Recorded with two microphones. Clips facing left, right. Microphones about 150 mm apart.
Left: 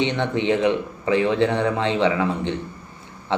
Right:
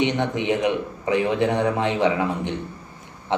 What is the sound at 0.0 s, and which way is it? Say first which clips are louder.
A man's voice: even; 15° right (ahead or behind).